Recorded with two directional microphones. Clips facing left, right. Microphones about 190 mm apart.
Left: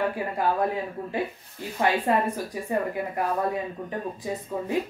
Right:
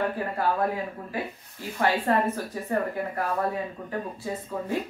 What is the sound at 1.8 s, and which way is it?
Speech, 15° left (ahead or behind).